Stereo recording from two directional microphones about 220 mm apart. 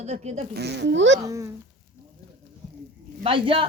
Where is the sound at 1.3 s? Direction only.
15° right (ahead or behind).